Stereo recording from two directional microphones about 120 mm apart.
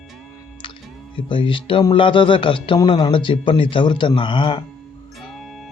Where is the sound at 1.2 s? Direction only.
45° left (ahead or behind).